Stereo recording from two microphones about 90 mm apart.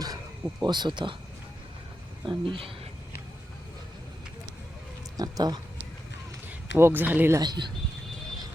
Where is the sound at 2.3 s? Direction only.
70° right (ahead or behind).